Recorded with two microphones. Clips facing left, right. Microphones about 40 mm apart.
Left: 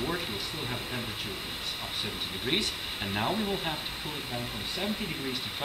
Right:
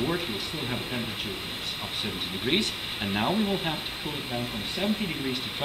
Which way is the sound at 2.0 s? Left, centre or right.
Right.